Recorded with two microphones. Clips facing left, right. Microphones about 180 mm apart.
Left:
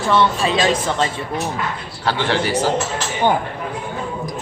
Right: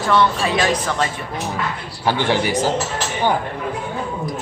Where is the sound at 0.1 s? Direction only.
20° left (ahead or behind).